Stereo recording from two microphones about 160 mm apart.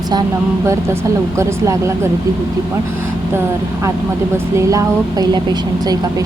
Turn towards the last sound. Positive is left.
turn(degrees=-25)  # may be behind; listen again after turning